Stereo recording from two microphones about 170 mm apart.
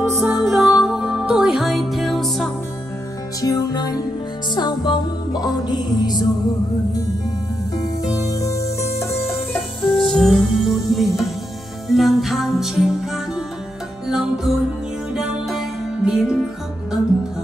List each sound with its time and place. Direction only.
0.0 s music: 10° right (ahead or behind)
3.3 s music: 20° left (ahead or behind)
7.7 s music: 20° left (ahead or behind)
9.5 s music: centre (ahead or behind)